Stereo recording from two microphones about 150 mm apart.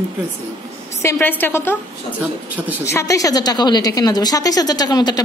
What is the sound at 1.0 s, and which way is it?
Speech, 15° left (ahead or behind).